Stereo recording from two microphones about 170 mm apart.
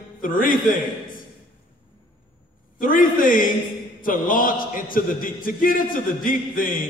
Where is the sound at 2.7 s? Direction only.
55° left (ahead or behind).